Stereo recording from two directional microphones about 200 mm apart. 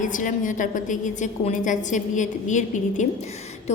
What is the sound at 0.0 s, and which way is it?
A woman's voice, 40° left (ahead or behind).